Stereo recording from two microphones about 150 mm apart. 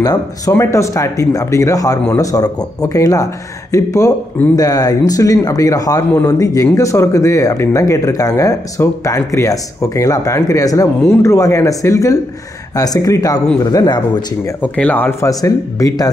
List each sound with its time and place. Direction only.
0.0 s speech: 20° left (ahead or behind)
14.6 s speech: 10° left (ahead or behind)